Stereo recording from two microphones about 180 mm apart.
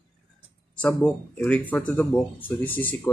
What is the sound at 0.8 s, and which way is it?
Speech, 10° left (ahead or behind).